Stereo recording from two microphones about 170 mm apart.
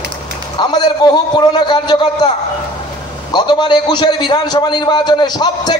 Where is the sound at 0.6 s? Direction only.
25° left (ahead or behind).